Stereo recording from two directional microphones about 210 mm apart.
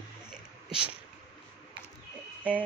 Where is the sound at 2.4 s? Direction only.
5° right (ahead or behind).